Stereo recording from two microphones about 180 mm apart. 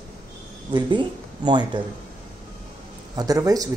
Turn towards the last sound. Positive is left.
turn(degrees=-20)  # may be behind; listen again after turning